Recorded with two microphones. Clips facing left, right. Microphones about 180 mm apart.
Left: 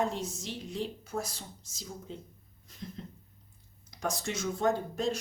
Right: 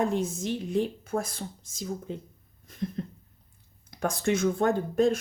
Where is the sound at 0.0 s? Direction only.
55° right (ahead or behind).